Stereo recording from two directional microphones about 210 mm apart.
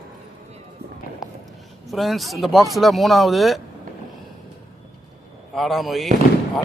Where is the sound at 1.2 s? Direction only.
Centre (ahead or behind).